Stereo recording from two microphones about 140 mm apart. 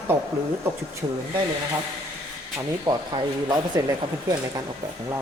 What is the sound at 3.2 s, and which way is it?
Speech, 25° right (ahead or behind).